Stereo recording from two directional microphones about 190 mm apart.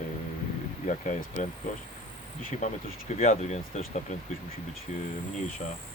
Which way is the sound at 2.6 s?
40° left (ahead or behind).